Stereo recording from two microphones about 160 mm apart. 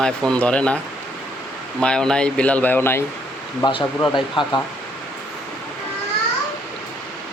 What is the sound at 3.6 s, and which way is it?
Speech, 30° left (ahead or behind).